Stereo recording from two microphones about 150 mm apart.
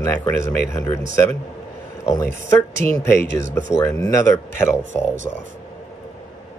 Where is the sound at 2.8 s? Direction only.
10° left (ahead or behind).